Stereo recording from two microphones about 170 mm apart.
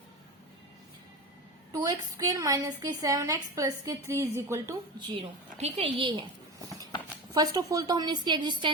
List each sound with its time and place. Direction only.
1.7 s a woman's voice: 20° right (ahead or behind)
5.1 s a woman's voice: 35° right (ahead or behind)
7.3 s a woman's voice: 20° right (ahead or behind)